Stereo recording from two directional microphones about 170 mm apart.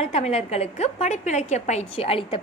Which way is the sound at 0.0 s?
40° left (ahead or behind).